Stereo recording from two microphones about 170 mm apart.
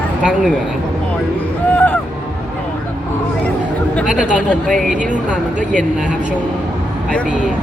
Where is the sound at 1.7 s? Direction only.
10° left (ahead or behind).